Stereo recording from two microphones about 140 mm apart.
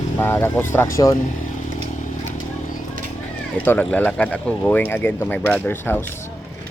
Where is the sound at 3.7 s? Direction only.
10° left (ahead or behind).